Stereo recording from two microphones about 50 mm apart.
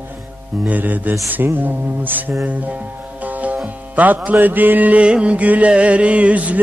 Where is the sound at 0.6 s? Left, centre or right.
Right.